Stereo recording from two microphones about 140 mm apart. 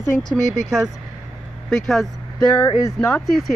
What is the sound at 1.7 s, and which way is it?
Speech, centre (ahead or behind).